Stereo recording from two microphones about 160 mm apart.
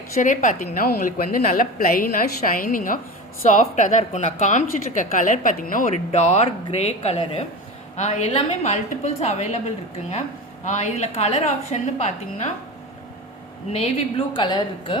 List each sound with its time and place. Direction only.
0.2 s a woman's voice: 55° left (ahead or behind)
3.4 s a woman's voice: 50° left (ahead or behind)
6.1 s a woman's voice: 45° left (ahead or behind)
10.7 s a woman's voice: 45° left (ahead or behind)
13.7 s speech: 35° left (ahead or behind)